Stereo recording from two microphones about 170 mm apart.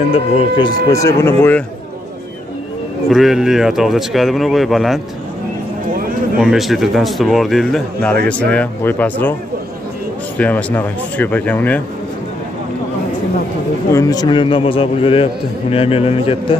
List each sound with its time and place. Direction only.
0.1 s speech: 35° left (ahead or behind); by 1.6 s 15° left (ahead or behind)
3.1 s speech: centre (ahead or behind)
6.4 s speech: centre (ahead or behind)
10.3 s speech: 10° left (ahead or behind)
13.9 s a man's voice: 20° left (ahead or behind)